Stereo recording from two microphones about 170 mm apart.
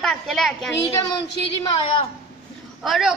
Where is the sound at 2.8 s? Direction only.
Centre (ahead or behind).